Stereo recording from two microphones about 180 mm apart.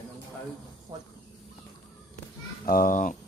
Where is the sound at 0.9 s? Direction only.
25° right (ahead or behind).